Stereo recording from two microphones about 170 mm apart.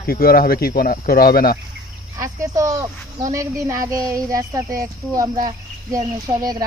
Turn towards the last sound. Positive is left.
turn(degrees=-20)  # may be behind; listen again after turning